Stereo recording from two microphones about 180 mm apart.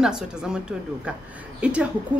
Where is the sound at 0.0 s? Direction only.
5° right (ahead or behind).